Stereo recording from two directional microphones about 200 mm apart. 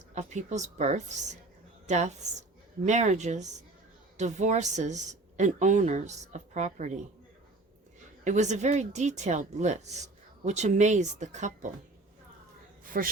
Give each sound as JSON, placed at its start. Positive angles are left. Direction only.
{"t": 0.1, "sound": "a woman's voice", "side_deg": -35}
{"t": 8.2, "sound": "a woman's voice", "side_deg": -35}
{"t": 12.9, "sound": "a woman's voice", "side_deg": -45}